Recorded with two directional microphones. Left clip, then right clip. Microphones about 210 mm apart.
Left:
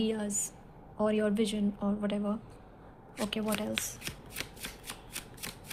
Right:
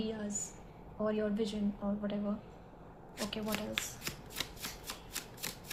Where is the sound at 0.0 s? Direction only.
50° left (ahead or behind).